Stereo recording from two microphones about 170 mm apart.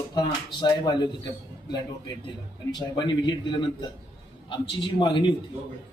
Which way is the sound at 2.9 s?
25° left (ahead or behind).